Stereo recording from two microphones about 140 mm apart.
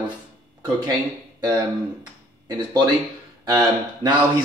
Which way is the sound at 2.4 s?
30° right (ahead or behind).